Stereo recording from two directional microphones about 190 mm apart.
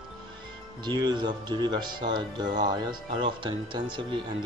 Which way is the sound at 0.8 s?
25° right (ahead or behind).